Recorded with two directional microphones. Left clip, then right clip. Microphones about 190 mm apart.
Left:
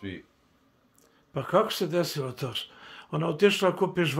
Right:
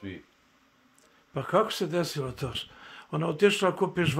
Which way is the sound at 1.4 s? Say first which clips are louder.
Left 1 dB; 10° right (ahead or behind).